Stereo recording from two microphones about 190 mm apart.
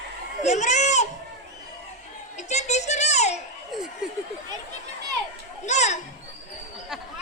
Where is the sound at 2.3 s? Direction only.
35° left (ahead or behind).